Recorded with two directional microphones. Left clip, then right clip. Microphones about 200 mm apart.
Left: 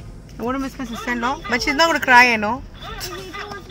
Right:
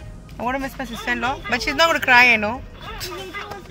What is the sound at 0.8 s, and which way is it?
Speech, 20° left (ahead or behind).